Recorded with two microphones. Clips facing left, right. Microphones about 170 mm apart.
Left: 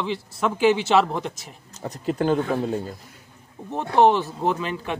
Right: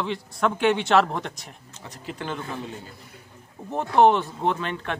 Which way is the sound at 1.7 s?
40° left (ahead or behind).